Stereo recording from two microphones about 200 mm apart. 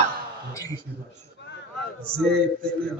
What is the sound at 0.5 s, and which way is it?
Speech, 15° left (ahead or behind).